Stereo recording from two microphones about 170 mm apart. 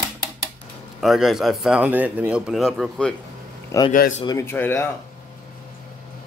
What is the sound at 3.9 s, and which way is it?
Speech, 50° left (ahead or behind).